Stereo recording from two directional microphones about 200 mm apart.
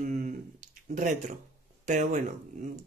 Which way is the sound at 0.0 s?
40° right (ahead or behind).